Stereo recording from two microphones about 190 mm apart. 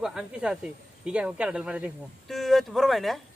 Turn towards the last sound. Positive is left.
turn(degrees=0)  # may be behind; listen again after turning